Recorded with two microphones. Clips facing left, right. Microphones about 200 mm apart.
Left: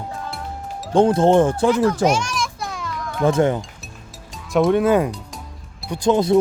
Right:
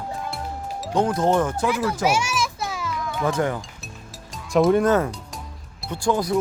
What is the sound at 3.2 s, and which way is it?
Speech, 25° left (ahead or behind).